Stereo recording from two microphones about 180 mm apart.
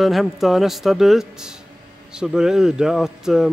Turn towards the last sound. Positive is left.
turn(degrees=0)  # may be behind; listen again after turning